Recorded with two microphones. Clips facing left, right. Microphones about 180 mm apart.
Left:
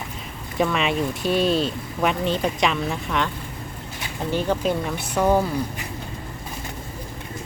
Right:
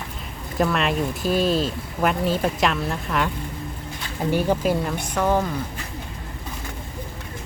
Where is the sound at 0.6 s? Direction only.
Centre (ahead or behind).